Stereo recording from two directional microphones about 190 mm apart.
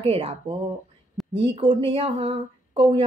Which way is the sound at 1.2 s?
Centre (ahead or behind).